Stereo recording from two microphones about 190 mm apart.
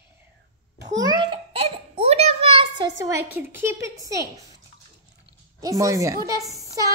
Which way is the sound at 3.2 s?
10° right (ahead or behind).